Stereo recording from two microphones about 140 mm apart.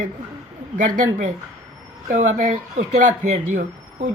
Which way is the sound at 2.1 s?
65° right (ahead or behind).